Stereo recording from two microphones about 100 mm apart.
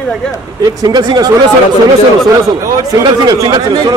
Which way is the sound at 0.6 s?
45° right (ahead or behind).